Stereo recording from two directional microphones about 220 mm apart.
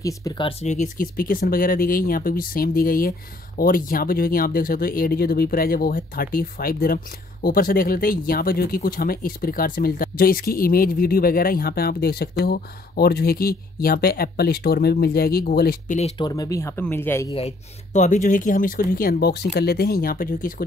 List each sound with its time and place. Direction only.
0.0 s speech: 20° left (ahead or behind); by 16.0 s 45° left (ahead or behind)
16.0 s speech: 20° left (ahead or behind)
17.9 s speech: 35° left (ahead or behind)